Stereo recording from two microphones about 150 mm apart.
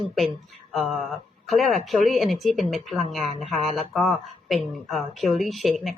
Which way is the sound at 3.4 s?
50° right (ahead or behind).